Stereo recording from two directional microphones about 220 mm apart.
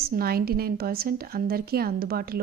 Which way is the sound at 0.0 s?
45° right (ahead or behind).